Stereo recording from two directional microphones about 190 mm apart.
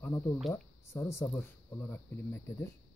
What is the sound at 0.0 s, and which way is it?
Speech, 10° left (ahead or behind).